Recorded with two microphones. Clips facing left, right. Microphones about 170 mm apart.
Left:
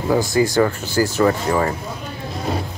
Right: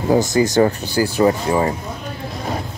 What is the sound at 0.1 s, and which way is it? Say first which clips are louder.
Speech: right 2 dB; 20° right (ahead or behind).